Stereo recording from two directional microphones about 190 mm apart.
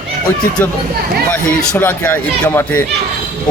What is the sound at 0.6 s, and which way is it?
Speech, 10° left (ahead or behind).